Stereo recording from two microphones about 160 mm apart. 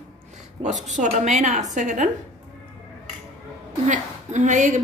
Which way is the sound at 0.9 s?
50° right (ahead or behind).